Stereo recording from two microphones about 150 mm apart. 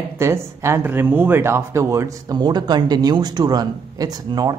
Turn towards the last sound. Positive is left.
turn(degrees=-25)  # may be behind; listen again after turning